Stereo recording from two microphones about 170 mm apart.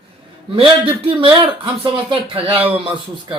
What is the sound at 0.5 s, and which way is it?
Speech, 30° right (ahead or behind).